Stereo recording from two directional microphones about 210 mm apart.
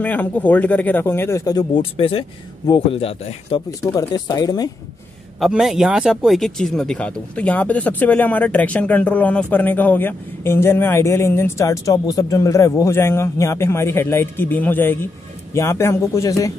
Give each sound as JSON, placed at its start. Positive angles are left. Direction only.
{"t": 0.0, "sound": "speech", "side_deg": 5}
{"t": 5.4, "sound": "speech", "side_deg": 0}